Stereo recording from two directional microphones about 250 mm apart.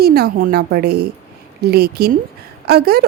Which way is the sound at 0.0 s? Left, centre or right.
Right.